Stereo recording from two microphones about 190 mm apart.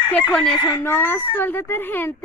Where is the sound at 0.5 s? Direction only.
25° left (ahead or behind).